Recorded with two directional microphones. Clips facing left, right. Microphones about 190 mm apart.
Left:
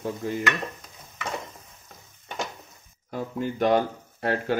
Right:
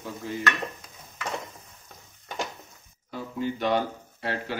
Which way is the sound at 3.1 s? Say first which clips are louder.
Left 1 dB; 50° left (ahead or behind).